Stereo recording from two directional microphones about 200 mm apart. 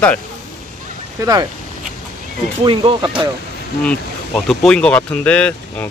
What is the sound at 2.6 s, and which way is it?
Speech, 25° right (ahead or behind).